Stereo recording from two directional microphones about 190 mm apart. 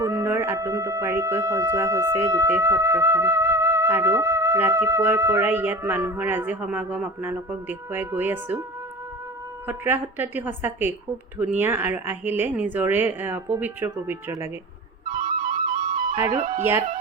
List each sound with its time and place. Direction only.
0.0 s speech: 15° right (ahead or behind)
9.6 s speech: 10° right (ahead or behind)
15.0 s flute: 45° right (ahead or behind)
16.1 s speech: 15° right (ahead or behind)
16.4 s speech: 35° right (ahead or behind)